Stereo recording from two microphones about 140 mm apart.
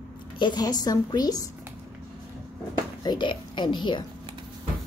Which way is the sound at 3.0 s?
35° left (ahead or behind).